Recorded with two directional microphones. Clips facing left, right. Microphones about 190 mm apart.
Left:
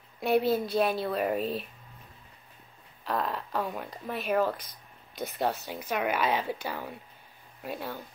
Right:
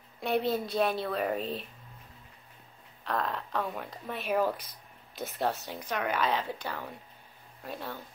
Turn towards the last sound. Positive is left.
turn(degrees=5)  # may be behind; listen again after turning